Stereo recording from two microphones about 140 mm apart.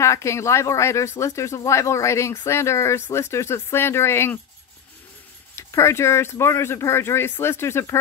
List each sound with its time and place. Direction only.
0.0 s speech: 20° left (ahead or behind)
5.6 s speech: 20° left (ahead or behind)